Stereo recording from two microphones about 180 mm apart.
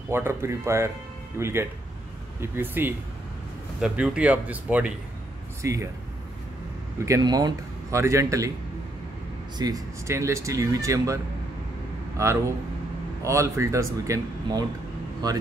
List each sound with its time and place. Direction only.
0.1 s speech: 15° right (ahead or behind)
7.1 s speech: 20° right (ahead or behind)
9.6 s speech: 20° right (ahead or behind)
12.2 s speech: 15° right (ahead or behind)